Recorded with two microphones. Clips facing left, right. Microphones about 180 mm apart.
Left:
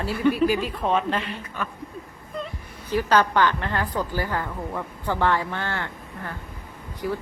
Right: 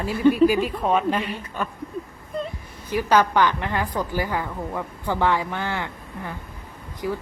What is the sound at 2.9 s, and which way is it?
A woman's voice, 15° right (ahead or behind).